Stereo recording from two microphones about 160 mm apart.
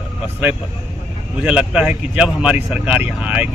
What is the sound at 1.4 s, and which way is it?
Speech, 5° right (ahead or behind).